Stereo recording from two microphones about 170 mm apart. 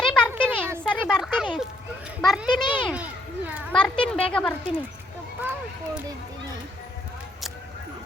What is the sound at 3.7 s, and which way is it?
Speech, 5° left (ahead or behind).